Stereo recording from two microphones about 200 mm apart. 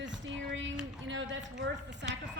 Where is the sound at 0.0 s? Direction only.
65° right (ahead or behind).